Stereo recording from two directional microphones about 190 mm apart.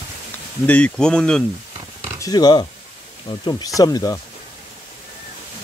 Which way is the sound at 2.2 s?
20° left (ahead or behind).